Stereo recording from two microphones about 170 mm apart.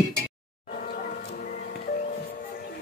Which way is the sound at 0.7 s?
55° left (ahead or behind).